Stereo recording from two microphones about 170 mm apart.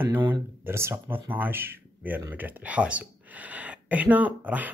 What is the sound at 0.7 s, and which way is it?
Speech, 15° right (ahead or behind).